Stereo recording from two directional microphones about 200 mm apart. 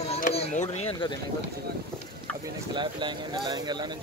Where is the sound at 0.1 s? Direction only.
30° left (ahead or behind).